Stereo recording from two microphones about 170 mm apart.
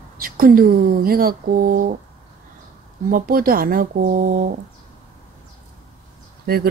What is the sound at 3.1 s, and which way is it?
Speech, 55° right (ahead or behind).